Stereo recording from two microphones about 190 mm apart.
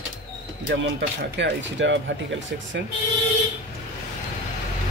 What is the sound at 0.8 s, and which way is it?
Speech, 70° right (ahead or behind).